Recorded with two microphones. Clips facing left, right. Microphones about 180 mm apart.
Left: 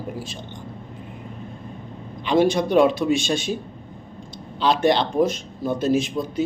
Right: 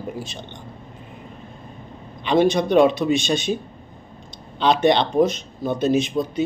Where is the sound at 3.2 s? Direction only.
20° right (ahead or behind).